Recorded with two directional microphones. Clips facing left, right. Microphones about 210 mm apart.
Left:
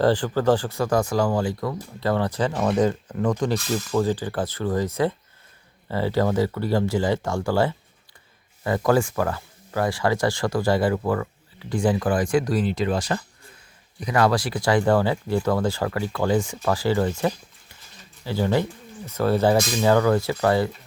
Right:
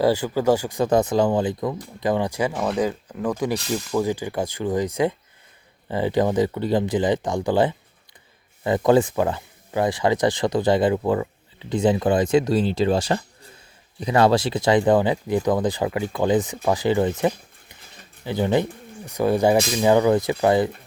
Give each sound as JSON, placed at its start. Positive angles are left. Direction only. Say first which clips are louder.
{"t": 0.0, "sound": "speech", "louder": "even", "side_deg": -10}